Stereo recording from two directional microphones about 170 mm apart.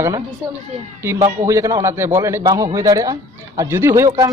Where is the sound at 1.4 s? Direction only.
20° right (ahead or behind).